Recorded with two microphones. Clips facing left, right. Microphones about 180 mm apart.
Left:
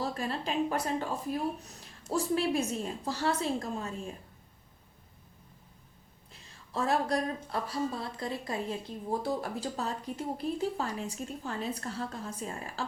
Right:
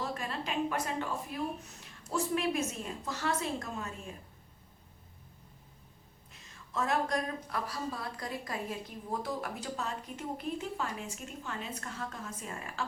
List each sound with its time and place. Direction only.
0.0 s a woman's voice: 35° left (ahead or behind)
6.3 s a woman's voice: 30° left (ahead or behind)